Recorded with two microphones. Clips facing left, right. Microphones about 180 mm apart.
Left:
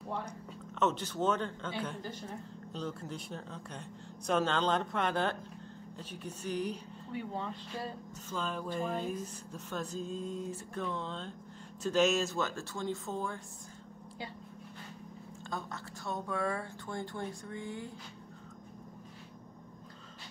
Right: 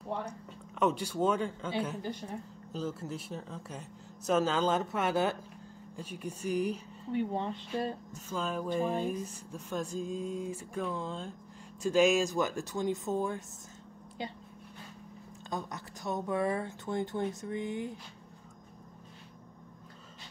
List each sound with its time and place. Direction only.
0.7 s speech: 10° right (ahead or behind)
7.2 s speech: 25° right (ahead or behind)
8.1 s speech: 10° right (ahead or behind)
15.5 s speech: 20° right (ahead or behind)